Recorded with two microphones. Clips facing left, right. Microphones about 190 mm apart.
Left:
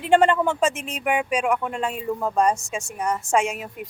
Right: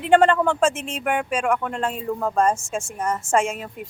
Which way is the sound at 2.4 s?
15° left (ahead or behind).